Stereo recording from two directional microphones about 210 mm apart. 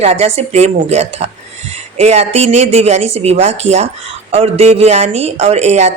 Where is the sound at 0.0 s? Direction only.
30° right (ahead or behind).